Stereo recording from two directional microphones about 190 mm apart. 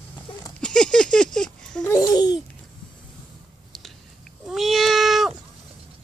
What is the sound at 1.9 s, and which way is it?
Babbling, 20° left (ahead or behind).